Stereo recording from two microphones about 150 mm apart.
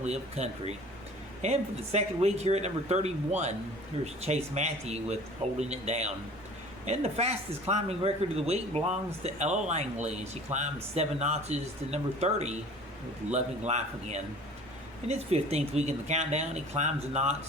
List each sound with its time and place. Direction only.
0.0 s speech: 45° right (ahead or behind)